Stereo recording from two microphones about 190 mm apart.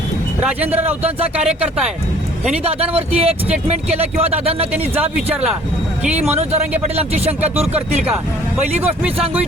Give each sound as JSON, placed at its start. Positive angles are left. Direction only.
{"t": 2.6, "sound": "speech", "side_deg": -30}
{"t": 6.8, "sound": "speech", "side_deg": -35}
{"t": 9.1, "sound": "speech", "side_deg": -30}